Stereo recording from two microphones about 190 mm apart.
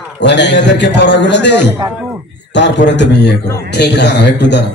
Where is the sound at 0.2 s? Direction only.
65° left (ahead or behind).